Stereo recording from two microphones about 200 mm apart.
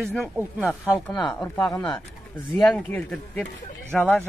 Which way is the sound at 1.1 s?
20° left (ahead or behind).